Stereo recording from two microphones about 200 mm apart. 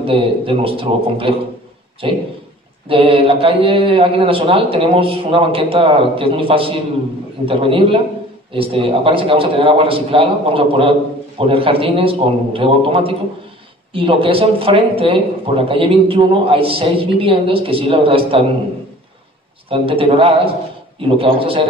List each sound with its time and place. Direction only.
0.0 s speech: 25° right (ahead or behind)
19.7 s speech: 25° right (ahead or behind)